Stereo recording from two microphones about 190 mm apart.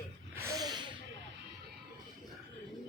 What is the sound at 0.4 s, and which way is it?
Snort, 20° right (ahead or behind).